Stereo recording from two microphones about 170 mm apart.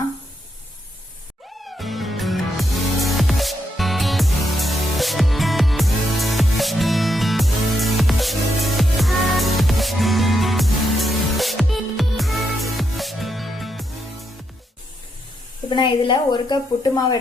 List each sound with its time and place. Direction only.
1.6 s music: centre (ahead or behind)
15.7 s a woman's voice: 30° left (ahead or behind)